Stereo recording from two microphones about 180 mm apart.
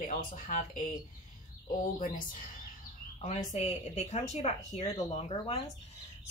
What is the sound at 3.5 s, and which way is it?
A woman's voice, 40° left (ahead or behind).